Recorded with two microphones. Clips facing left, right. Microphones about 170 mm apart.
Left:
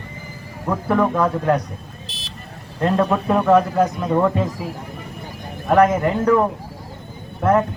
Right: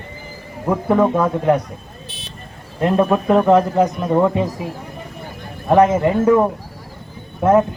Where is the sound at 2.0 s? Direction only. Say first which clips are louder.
Right 2 dB; 90° left.